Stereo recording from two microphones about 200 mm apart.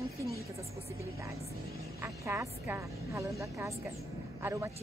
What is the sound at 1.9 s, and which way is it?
A woman's voice, 10° right (ahead or behind).